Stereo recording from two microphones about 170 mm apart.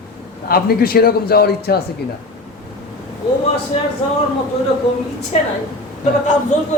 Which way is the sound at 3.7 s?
35° left (ahead or behind).